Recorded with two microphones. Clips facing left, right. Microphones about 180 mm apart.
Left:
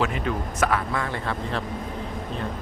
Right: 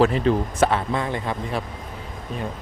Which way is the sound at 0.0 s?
30° right (ahead or behind).